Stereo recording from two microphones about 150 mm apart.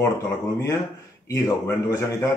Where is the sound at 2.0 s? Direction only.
20° left (ahead or behind).